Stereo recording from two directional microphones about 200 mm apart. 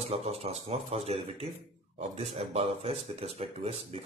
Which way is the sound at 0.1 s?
30° right (ahead or behind).